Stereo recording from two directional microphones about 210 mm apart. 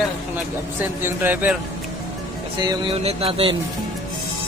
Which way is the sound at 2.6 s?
25° right (ahead or behind).